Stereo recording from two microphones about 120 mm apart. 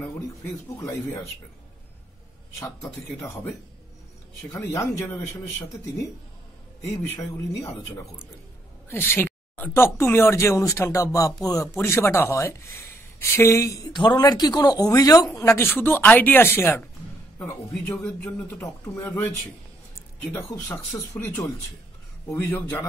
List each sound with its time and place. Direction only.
0.7 s speech: 25° left (ahead or behind)
4.5 s speech: 25° left (ahead or behind)
7.6 s speech: 20° left (ahead or behind)
13.9 s a man's voice: 35° left (ahead or behind); by 19.1 s 20° left (ahead or behind)
20.2 s a man's voice: 15° left (ahead or behind)